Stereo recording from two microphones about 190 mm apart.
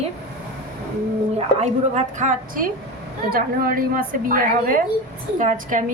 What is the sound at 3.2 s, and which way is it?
A woman's voice, 50° right (ahead or behind).